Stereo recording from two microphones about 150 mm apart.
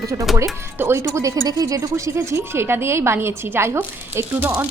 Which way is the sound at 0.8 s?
15° right (ahead or behind).